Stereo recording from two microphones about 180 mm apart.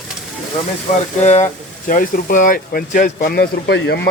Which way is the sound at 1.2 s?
40° left (ahead or behind).